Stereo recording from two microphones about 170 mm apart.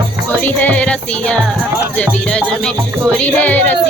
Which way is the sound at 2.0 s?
5° left (ahead or behind).